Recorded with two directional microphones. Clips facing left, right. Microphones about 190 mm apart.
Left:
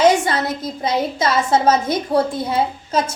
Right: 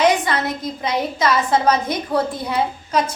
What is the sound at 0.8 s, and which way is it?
A woman's voice, 25° left (ahead or behind).